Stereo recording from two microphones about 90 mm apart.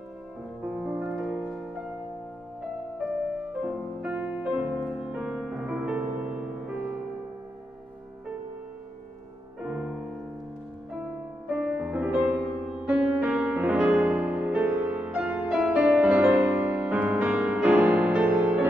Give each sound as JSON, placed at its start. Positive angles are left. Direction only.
{"t": 0.7, "sound": "music", "side_deg": -15}
{"t": 1.1, "sound": "music", "side_deg": -5}
{"t": 3.6, "sound": "music", "side_deg": -15}
{"t": 9.6, "sound": "music", "side_deg": -10}
{"t": 11.4, "sound": "music", "side_deg": -10}